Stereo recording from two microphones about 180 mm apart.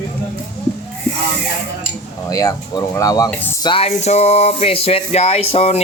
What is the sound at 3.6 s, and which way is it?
Speech, 30° left (ahead or behind).